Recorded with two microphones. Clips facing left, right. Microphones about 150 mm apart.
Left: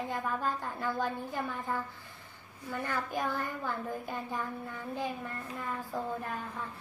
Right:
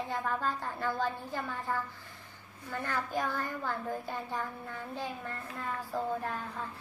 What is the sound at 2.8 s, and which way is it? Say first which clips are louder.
Speech: even; 15° left (ahead or behind).